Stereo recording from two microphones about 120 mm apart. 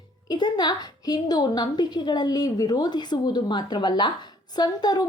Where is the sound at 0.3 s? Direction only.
35° left (ahead or behind).